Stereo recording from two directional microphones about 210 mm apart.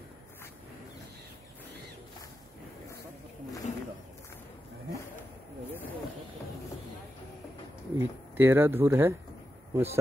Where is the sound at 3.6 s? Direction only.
35° left (ahead or behind).